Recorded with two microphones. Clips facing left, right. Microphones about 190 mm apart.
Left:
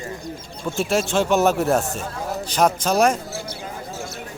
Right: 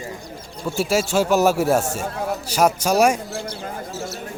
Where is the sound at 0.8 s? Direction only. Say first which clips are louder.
Right 1 dB; 5° right (ahead or behind).